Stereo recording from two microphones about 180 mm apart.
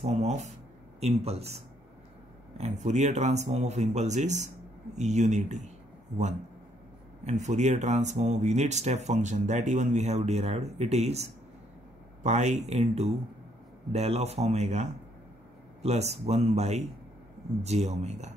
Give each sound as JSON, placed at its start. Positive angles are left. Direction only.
{"t": 0.0, "sound": "speech", "side_deg": -40}
{"t": 2.5, "sound": "speech", "side_deg": -40}
{"t": 7.2, "sound": "speech", "side_deg": -40}